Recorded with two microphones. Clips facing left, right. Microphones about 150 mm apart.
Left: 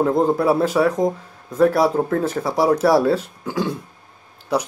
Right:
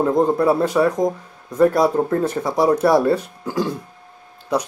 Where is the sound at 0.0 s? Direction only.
5° left (ahead or behind).